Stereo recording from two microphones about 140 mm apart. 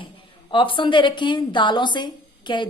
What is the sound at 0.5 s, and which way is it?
A woman's voice, 35° left (ahead or behind).